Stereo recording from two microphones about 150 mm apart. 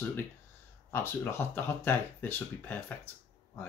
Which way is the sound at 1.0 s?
15° left (ahead or behind).